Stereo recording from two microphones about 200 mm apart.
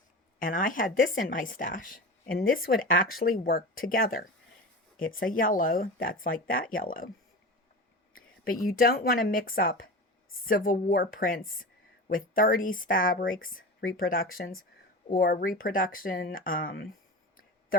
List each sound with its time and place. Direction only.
0.3 s speech: 45° left (ahead or behind)
8.7 s a woman's voice: 45° left (ahead or behind)